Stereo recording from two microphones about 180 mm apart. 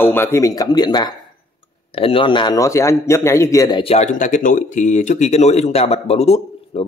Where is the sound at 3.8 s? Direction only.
35° left (ahead or behind).